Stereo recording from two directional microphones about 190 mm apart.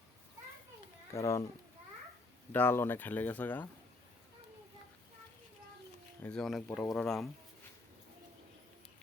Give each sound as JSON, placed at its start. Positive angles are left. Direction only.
{"t": 1.1, "sound": "speech", "side_deg": 15}
{"t": 2.5, "sound": "speech", "side_deg": 10}
{"t": 6.2, "sound": "speech", "side_deg": 5}